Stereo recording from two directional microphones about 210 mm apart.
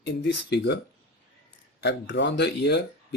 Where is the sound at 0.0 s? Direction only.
55° left (ahead or behind).